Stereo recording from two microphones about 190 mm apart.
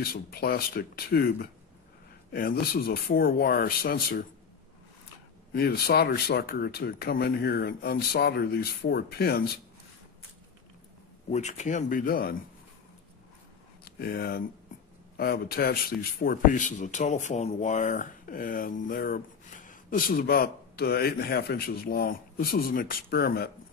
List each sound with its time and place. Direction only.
0.0 s speech: 55° left (ahead or behind)
5.5 s speech: 55° left (ahead or behind)
11.2 s speech: 35° left (ahead or behind)
13.8 s speech: 50° left (ahead or behind)